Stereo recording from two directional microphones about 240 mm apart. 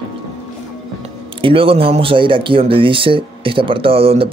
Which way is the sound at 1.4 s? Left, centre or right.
Right.